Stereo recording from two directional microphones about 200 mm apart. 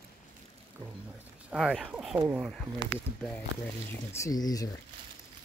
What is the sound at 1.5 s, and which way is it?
Speech, 5° right (ahead or behind).